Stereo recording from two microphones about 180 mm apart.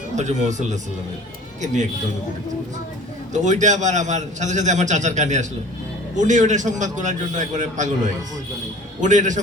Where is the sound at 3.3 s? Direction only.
40° right (ahead or behind).